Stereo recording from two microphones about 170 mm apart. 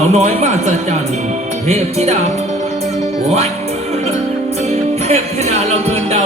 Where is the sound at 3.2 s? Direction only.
40° right (ahead or behind).